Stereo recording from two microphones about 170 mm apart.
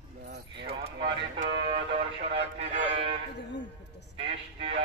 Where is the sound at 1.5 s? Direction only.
90° right.